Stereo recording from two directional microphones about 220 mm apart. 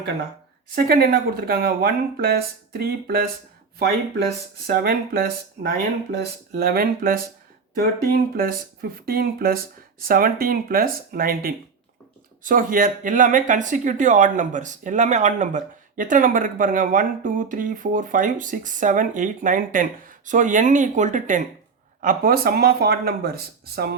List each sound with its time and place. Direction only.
0.8 s speech: 45° right (ahead or behind)
4.6 s speech: 45° right (ahead or behind)